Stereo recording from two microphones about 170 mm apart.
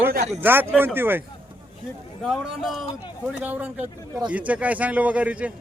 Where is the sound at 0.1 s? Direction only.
45° right (ahead or behind).